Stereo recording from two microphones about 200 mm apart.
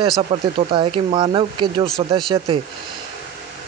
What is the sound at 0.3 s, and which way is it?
Speech, 25° right (ahead or behind).